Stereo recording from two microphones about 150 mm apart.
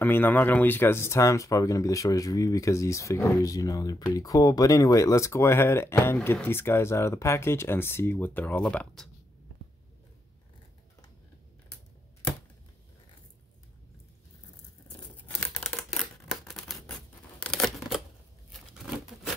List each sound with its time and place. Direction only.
0.0 s speech: 10° left (ahead or behind)
15.5 s a sound: 5° left (ahead or behind)
17.4 s scissors: 5° left (ahead or behind)